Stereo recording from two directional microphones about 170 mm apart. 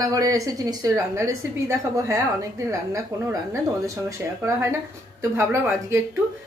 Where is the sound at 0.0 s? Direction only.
20° right (ahead or behind).